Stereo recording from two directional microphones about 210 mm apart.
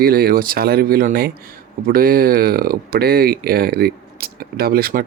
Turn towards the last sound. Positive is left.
turn(degrees=-45)  # may be behind; listen again after turning